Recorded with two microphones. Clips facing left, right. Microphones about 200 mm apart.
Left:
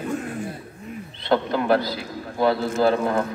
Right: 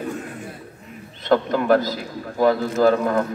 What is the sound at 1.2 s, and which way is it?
A man's voice, 45° right (ahead or behind).